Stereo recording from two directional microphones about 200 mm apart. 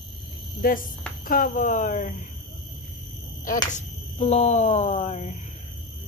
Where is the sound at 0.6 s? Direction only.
45° left (ahead or behind).